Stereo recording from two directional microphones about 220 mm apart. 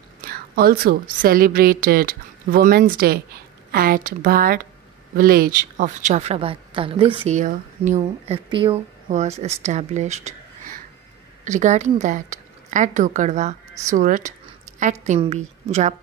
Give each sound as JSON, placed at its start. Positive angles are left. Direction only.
{"t": 0.2, "sound": "a woman's voice", "side_deg": -40}